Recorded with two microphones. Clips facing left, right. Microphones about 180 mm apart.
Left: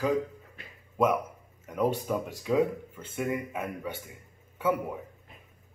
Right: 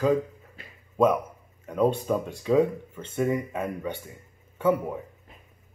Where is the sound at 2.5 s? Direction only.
5° left (ahead or behind).